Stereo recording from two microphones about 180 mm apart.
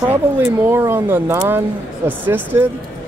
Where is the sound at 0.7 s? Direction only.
15° right (ahead or behind).